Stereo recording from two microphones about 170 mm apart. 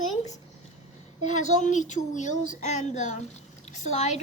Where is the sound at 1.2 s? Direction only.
45° left (ahead or behind).